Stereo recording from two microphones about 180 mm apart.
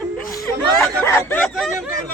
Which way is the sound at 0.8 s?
10° left (ahead or behind).